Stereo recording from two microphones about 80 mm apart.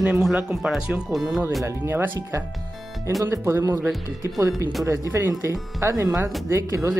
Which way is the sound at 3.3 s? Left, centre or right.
Right.